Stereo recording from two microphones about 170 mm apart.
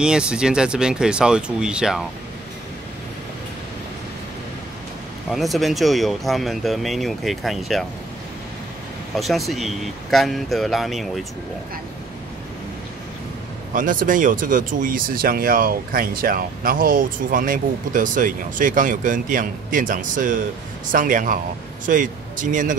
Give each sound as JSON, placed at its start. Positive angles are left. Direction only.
{"t": 0.0, "sound": "speech", "side_deg": -5}
{"t": 5.3, "sound": "speech", "side_deg": 0}
{"t": 9.1, "sound": "speech", "side_deg": 0}
{"t": 13.7, "sound": "speech", "side_deg": -55}